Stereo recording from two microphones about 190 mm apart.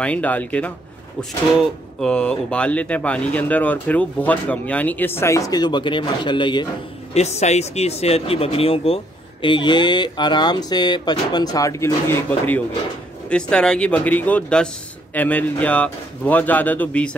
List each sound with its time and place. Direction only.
0.0 s speech: 5° left (ahead or behind)
2.0 s speech: 5° left (ahead or behind); by 6.7 s 25° left (ahead or behind)
7.2 s speech: 35° left (ahead or behind); by 17.1 s 10° left (ahead or behind)